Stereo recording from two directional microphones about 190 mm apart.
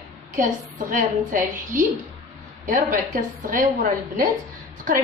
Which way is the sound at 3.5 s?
45° right (ahead or behind).